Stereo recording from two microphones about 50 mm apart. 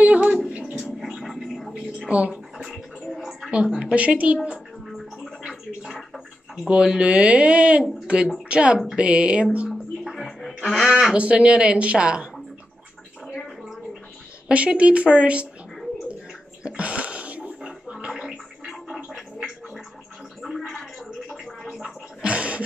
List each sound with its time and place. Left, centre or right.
0.0 s a sound: right
0.7 s gargling: centre
1.7 s speech: right
3.3 s a sound: centre
3.5 s speech: centre
4.8 s gargling: centre
5.4 s gargling: centre
6.1 s a woman's voice: centre
10.1 s music: centre
10.7 s speech: centre
11.1 s speech: right
14.5 s speech: right
16.6 s gargling: right; by 21.9 s centre
22.2 s a sound: right